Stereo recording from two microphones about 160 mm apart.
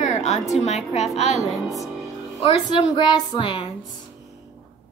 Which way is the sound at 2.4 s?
30° left (ahead or behind).